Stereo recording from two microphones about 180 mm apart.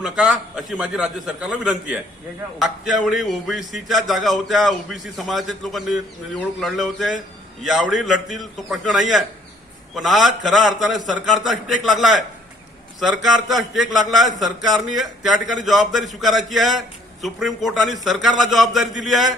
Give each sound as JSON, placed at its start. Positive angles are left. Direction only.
{"t": 0.0, "sound": "a man's voice", "side_deg": 0}